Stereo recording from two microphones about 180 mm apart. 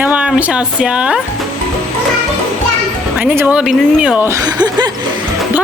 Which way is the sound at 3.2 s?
10° right (ahead or behind).